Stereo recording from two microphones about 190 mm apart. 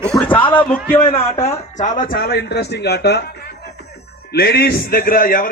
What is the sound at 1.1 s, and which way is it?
Speech, 35° left (ahead or behind).